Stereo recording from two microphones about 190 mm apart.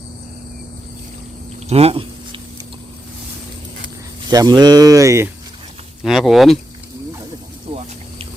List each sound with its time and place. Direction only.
1.6 s a sound: 30° right (ahead or behind)
4.3 s speech: 20° right (ahead or behind)
6.0 s speech: centre (ahead or behind)